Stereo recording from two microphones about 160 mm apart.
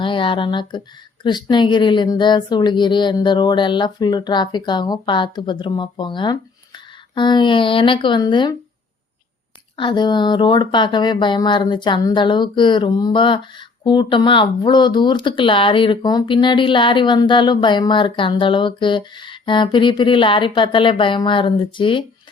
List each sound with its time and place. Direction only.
0.0 s speech: 30° left (ahead or behind)
9.7 s speech: 30° left (ahead or behind)